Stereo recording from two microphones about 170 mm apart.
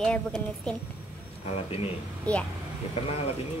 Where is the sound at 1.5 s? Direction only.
35° left (ahead or behind).